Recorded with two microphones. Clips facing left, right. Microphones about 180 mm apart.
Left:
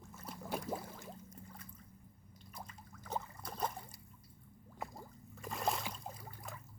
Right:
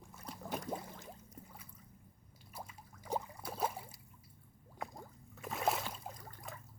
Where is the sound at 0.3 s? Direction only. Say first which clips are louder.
Even; 5° left (ahead or behind).